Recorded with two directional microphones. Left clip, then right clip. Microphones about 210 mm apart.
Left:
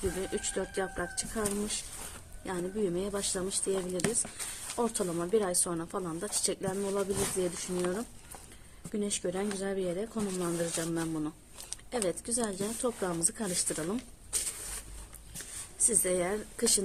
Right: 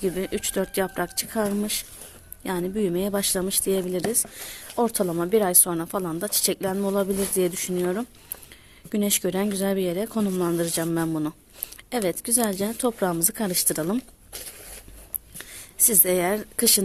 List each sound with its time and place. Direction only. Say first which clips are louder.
0.2 s a woman's voice: right 7 dB; 50° right (ahead or behind)
4.8 s a woman's voice: right 8 dB; 45° right (ahead or behind)
16.0 s a woman's voice: right 8 dB; 55° right (ahead or behind)